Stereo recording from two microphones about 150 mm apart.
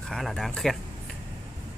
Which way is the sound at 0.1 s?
Centre (ahead or behind).